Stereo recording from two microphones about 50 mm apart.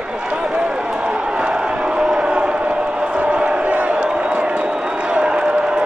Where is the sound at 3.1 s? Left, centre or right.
Right.